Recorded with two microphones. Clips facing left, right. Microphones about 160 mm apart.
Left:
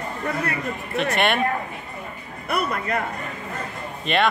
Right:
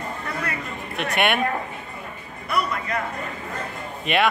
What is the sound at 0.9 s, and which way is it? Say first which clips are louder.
Speech: left 1 dB; centre (ahead or behind).